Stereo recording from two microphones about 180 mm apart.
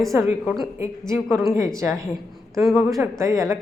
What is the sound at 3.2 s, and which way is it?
Speech, 15° right (ahead or behind).